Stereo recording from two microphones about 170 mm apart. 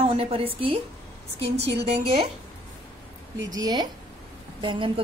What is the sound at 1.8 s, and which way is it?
Speech, 35° right (ahead or behind).